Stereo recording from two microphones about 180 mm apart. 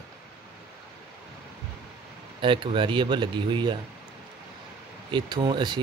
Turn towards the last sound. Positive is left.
turn(degrees=-25)  # may be behind; listen again after turning